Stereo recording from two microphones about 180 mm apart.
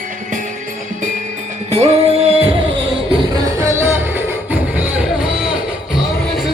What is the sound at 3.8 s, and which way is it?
Music, 10° right (ahead or behind).